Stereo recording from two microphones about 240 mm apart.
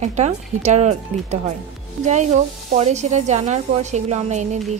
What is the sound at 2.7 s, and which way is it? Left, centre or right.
Music, right.